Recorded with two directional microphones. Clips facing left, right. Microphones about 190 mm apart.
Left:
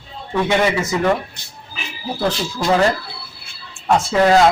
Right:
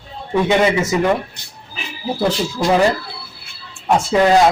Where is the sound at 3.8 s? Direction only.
15° right (ahead or behind).